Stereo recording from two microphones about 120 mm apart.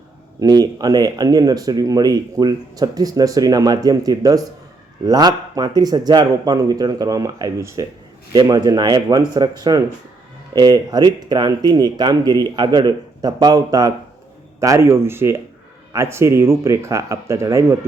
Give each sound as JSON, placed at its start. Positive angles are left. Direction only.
{"t": 0.3, "sound": "speech", "side_deg": -30}